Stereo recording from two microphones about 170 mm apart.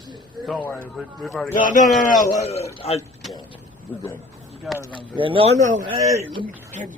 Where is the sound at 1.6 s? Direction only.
50° left (ahead or behind).